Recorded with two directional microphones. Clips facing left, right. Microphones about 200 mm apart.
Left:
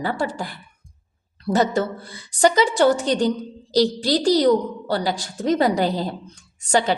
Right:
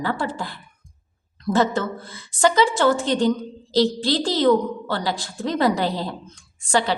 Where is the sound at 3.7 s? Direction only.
40° left (ahead or behind).